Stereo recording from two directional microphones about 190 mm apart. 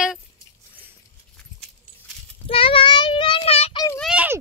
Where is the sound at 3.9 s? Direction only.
5° right (ahead or behind).